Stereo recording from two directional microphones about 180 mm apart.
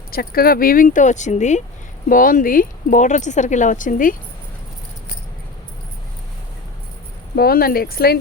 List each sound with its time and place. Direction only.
0.1 s speech: 55° left (ahead or behind)
7.3 s speech: 55° left (ahead or behind)